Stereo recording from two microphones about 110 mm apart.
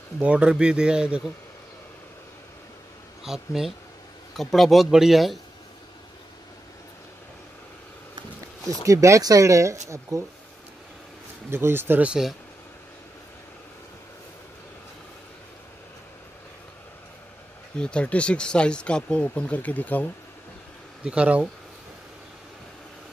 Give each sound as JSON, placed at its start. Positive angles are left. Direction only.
{"t": 0.2, "sound": "speech", "side_deg": -10}
{"t": 3.3, "sound": "speech", "side_deg": -5}
{"t": 8.8, "sound": "speech", "side_deg": -30}
{"t": 11.5, "sound": "speech", "side_deg": -20}
{"t": 17.7, "sound": "speech", "side_deg": 10}
{"t": 21.0, "sound": "speech", "side_deg": -10}